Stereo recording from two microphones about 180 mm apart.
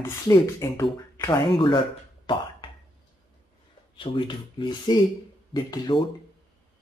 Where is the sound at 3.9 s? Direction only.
30° left (ahead or behind).